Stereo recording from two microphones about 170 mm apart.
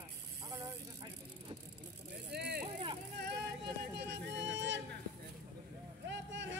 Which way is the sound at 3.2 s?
85° right.